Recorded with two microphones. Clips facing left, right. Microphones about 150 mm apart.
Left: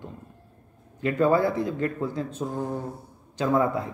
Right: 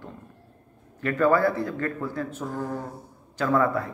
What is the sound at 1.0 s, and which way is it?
Speech, 20° left (ahead or behind).